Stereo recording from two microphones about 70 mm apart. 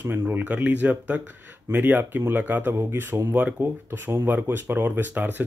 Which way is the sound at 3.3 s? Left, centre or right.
Centre.